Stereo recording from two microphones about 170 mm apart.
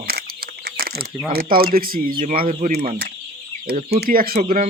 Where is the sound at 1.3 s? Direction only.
60° right (ahead or behind); by 2.8 s 40° right (ahead or behind).